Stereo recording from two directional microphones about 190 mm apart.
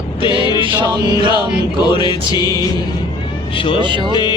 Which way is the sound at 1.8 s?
25° left (ahead or behind).